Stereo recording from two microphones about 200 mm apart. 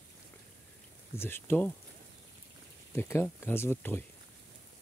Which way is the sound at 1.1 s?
10° left (ahead or behind).